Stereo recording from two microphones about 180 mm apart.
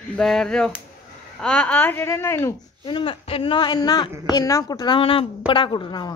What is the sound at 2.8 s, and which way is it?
Speech, 30° left (ahead or behind).